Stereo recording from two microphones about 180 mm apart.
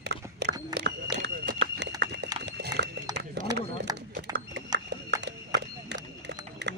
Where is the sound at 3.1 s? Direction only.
20° right (ahead or behind).